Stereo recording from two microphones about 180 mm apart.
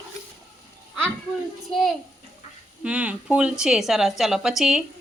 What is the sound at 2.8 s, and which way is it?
A woman's voice, 5° right (ahead or behind).